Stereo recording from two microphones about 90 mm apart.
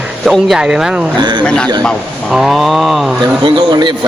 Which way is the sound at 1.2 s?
55° right (ahead or behind).